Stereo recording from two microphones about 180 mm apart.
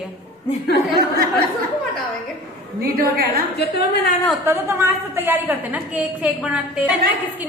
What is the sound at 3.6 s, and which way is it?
Speech, 60° left (ahead or behind).